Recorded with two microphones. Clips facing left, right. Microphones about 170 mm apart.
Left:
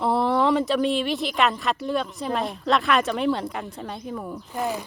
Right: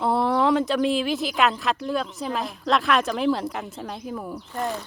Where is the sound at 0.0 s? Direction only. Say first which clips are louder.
Even; centre (ahead or behind).